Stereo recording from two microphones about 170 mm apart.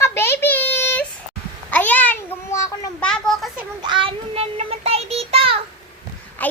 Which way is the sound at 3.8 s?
30° right (ahead or behind).